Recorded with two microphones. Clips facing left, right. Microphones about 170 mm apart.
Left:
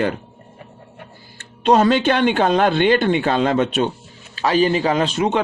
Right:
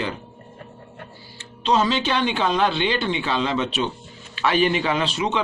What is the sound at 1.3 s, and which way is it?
Speech, 55° left (ahead or behind).